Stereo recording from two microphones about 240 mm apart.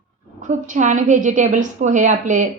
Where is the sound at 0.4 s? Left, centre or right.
Right.